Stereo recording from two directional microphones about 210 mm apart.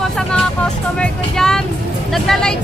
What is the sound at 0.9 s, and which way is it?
Speech, 5° left (ahead or behind).